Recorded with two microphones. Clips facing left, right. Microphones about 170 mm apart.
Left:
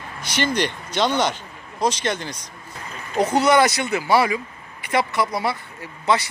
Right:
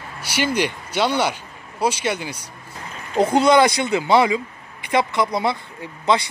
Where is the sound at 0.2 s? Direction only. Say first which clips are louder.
Right 1 dB; 10° right (ahead or behind).